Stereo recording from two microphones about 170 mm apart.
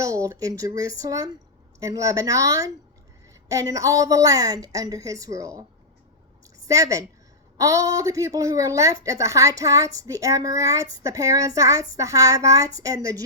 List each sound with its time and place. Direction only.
0.0 s a woman's voice: 20° right (ahead or behind)
6.7 s a woman's voice: 20° right (ahead or behind)